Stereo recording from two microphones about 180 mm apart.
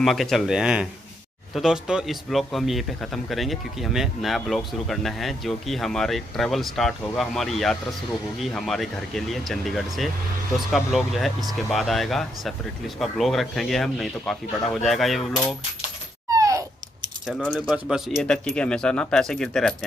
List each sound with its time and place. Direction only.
0.0 s speech: centre (ahead or behind)
16.3 s a sound: 20° right (ahead or behind)
17.3 s speech: 5° left (ahead or behind)
17.6 s speech: 5° right (ahead or behind)